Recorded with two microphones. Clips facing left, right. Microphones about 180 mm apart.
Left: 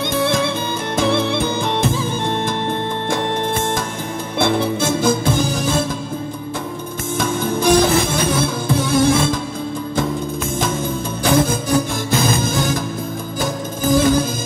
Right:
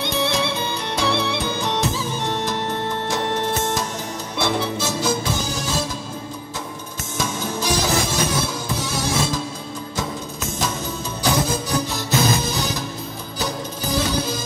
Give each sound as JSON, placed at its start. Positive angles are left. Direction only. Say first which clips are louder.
{"t": 0.0, "sound": "music", "louder": "left 4 dB", "side_deg": 50}
{"t": 7.2, "sound": "music", "louder": "left 5 dB", "side_deg": 55}
{"t": 11.2, "sound": "music", "louder": "left 5 dB", "side_deg": 50}